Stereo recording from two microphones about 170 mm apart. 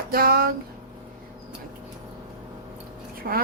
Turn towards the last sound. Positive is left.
turn(degrees=-60)  # may be behind; listen again after turning